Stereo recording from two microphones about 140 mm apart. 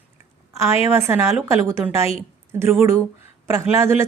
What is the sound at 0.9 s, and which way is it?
Speech, 15° right (ahead or behind).